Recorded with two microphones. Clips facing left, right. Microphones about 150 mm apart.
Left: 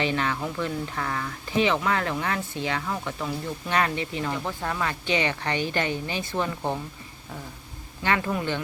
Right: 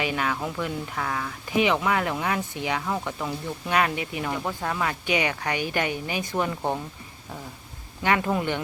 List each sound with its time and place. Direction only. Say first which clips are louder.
0.0 s speech: left 1 dB; 10° right (ahead or behind)
8.0 s speech: right 2 dB; 15° right (ahead or behind)